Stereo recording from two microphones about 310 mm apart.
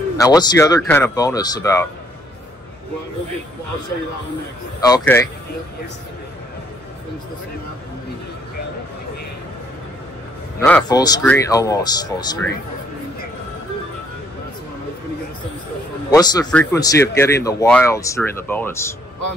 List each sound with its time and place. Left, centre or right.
0.2 s speech: centre
4.8 s speech: centre
10.6 s speech: centre
16.1 s speech: centre